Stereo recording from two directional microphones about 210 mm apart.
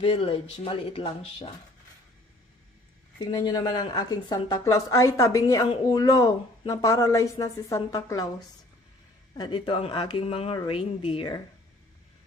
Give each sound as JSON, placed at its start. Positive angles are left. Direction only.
{"t": 0.0, "sound": "speech", "side_deg": 25}
{"t": 3.2, "sound": "a woman's voice", "side_deg": 20}
{"t": 9.4, "sound": "speech", "side_deg": 20}